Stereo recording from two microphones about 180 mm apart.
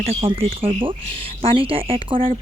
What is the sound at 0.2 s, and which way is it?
Speech, 30° right (ahead or behind).